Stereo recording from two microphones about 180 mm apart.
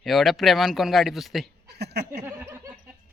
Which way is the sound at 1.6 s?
65° right (ahead or behind).